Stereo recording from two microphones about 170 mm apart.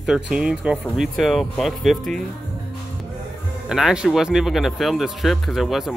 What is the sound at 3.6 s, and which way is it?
Speech, 5° right (ahead or behind).